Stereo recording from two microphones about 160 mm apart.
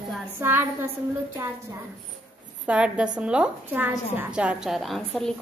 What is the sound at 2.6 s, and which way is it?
A woman's voice, 5° right (ahead or behind).